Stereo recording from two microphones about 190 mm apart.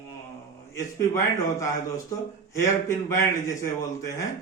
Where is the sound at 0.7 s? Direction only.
15° left (ahead or behind).